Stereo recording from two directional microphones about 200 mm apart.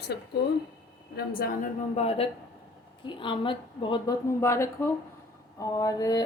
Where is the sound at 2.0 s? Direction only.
30° left (ahead or behind); by 4.9 s 15° left (ahead or behind).